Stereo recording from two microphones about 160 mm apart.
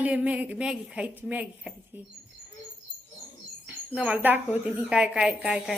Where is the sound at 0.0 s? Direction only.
10° right (ahead or behind).